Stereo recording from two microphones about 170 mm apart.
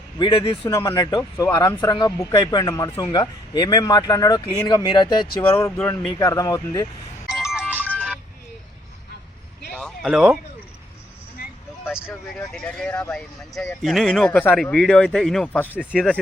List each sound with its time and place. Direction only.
0.2 s speech: 30° left (ahead or behind)
5.4 s speech: 15° left (ahead or behind)
7.3 s music: 5° right (ahead or behind)
7.9 s a sound: 5° left (ahead or behind)
9.7 s a sound: 5° left (ahead or behind)
10.1 s speech: 5° right (ahead or behind)
11.9 s speech: centre (ahead or behind)